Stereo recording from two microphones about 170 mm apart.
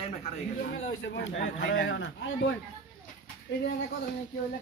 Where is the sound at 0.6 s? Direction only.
85° left.